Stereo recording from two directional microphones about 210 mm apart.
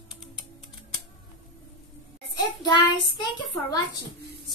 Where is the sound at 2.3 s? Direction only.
20° left (ahead or behind).